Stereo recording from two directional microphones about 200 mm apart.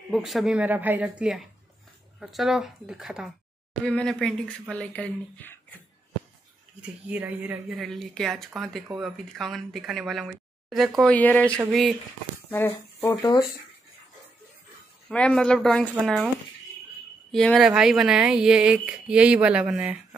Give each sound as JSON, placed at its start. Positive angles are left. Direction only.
{"t": 0.1, "sound": "speech", "side_deg": 0}
{"t": 6.8, "sound": "speech", "side_deg": -10}
{"t": 15.0, "sound": "speech", "side_deg": 5}
{"t": 17.3, "sound": "speech", "side_deg": 0}